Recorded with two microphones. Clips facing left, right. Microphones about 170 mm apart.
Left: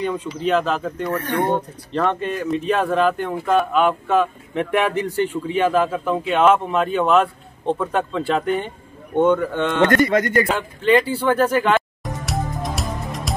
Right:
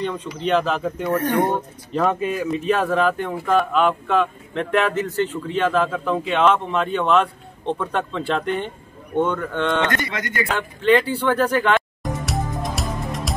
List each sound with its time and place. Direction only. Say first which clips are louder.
0.0 s speech: left 2 dB; 5° left (ahead or behind)
9.8 s speech: left 9 dB; 45° left (ahead or behind)
10.5 s speech: even; 5° left (ahead or behind)
11.1 s music: left 2 dB; 5° left (ahead or behind)